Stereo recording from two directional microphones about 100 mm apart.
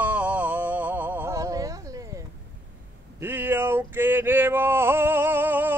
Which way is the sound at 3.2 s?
20° right (ahead or behind).